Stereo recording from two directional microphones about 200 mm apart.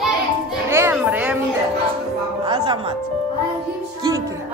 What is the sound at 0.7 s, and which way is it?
Music, 10° right (ahead or behind).